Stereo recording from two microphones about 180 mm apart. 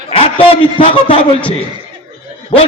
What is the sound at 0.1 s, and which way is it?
A man's voice, 30° left (ahead or behind).